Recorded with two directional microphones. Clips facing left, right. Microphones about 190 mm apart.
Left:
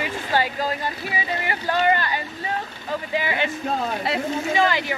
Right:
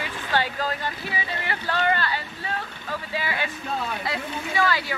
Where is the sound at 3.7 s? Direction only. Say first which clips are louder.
Left 1 dB; 40° left (ahead or behind).